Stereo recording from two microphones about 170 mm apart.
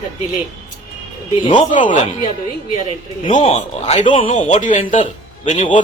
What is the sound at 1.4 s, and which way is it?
Speech, 30° left (ahead or behind).